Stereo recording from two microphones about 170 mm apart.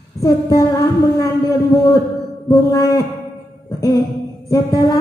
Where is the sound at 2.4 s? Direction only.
20° left (ahead or behind).